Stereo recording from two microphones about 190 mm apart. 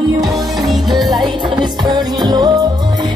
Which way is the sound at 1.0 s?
Centre (ahead or behind).